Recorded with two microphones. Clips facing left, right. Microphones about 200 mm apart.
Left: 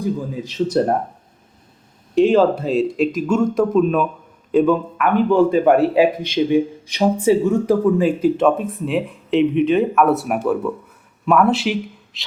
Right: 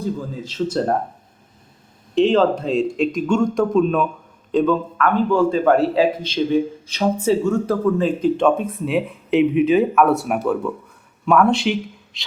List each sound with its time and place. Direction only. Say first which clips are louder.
0.0 s a man's voice: left 3 dB; 15° left (ahead or behind)
2.1 s a man's voice: left 2 dB; 10° left (ahead or behind)